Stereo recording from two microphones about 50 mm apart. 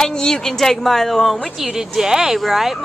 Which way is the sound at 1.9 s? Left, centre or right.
Centre.